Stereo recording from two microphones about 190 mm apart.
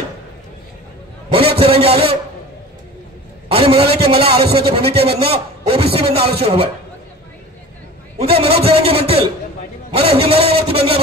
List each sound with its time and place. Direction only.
1.3 s a sound: 30° right (ahead or behind)
3.4 s a man's voice: 30° right (ahead or behind)
8.2 s a man's voice: 30° right (ahead or behind)